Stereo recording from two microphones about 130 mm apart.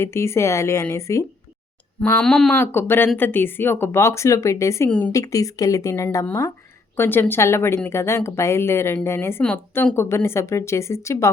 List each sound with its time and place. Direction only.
0.0 s speech: 20° left (ahead or behind)
2.1 s speech: 5° left (ahead or behind)
2.5 s speech: 15° left (ahead or behind)
4.9 s speech: 10° left (ahead or behind)
5.1 s speech: 25° left (ahead or behind)